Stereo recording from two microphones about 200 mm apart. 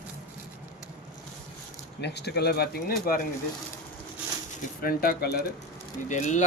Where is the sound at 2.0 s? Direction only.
55° left (ahead or behind).